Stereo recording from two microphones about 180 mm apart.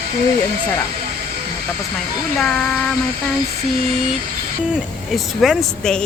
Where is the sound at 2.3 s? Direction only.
5° left (ahead or behind).